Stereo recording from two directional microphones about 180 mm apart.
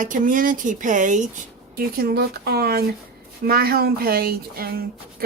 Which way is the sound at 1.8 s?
55° right (ahead or behind).